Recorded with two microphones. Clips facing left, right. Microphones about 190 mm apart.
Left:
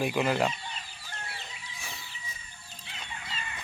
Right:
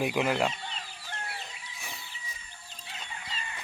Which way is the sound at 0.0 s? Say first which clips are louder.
Even; 10° right (ahead or behind).